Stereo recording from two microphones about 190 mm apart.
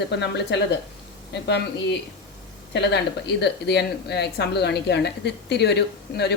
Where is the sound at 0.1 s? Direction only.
65° left (ahead or behind).